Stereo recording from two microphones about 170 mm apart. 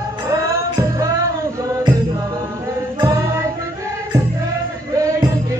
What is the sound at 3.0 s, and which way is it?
Music, 20° right (ahead or behind).